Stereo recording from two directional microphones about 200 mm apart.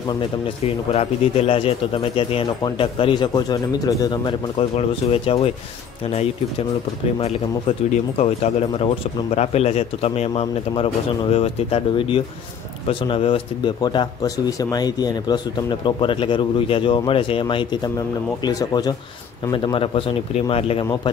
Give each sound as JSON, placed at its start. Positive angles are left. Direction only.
{"t": 0.9, "sound": "speech", "side_deg": 30}
{"t": 7.2, "sound": "speech", "side_deg": 30}